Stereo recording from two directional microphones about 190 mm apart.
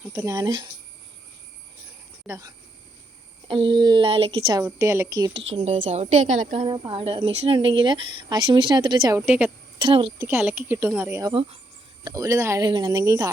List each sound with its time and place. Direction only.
0.1 s speech: 20° right (ahead or behind)
2.2 s speech: 15° right (ahead or behind)
3.5 s speech: 25° right (ahead or behind)
4.6 s a woman's voice: 15° right (ahead or behind)
5.6 s a woman's voice: 40° right (ahead or behind)
6.7 s speech: 25° right (ahead or behind); by 9.5 s 10° right (ahead or behind)
9.7 s a woman's voice: 25° right (ahead or behind)
10.2 s a woman's voice: 10° right (ahead or behind)